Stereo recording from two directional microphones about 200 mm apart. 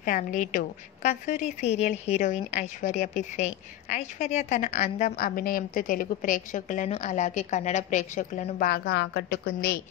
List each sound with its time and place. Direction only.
0.0 s a woman's voice: 40° left (ahead or behind)